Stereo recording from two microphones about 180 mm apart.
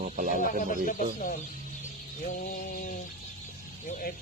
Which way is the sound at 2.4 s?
50° left (ahead or behind).